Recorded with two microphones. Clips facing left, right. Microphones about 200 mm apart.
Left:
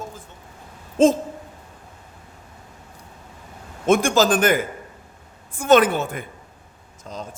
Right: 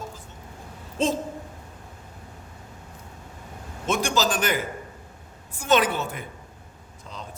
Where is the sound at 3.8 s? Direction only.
50° left (ahead or behind).